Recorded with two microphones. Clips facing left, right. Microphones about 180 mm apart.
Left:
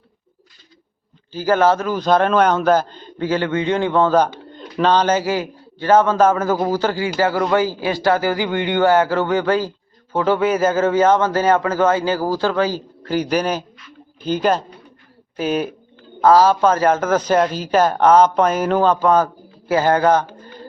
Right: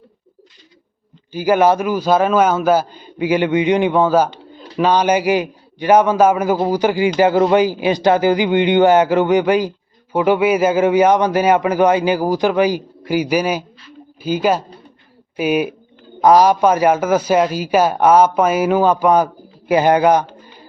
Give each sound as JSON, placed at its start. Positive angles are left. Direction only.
{"t": 1.3, "sound": "a man's voice", "side_deg": -15}